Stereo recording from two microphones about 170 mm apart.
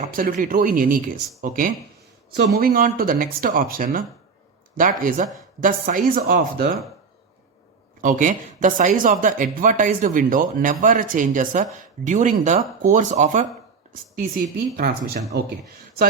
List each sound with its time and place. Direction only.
0.0 s speech: 55° right (ahead or behind)
2.3 s speech: 65° right (ahead or behind)
8.0 s speech: 50° right (ahead or behind)